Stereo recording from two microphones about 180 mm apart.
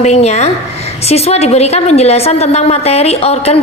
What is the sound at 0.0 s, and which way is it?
A woman's voice, 40° left (ahead or behind).